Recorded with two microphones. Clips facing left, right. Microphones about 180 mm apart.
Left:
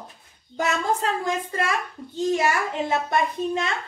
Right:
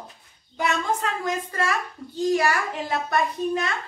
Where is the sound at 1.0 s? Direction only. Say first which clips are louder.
Left 2 dB; 30° left (ahead or behind).